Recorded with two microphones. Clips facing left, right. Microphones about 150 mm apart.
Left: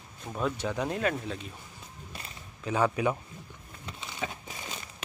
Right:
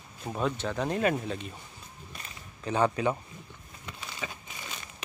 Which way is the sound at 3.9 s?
20° left (ahead or behind).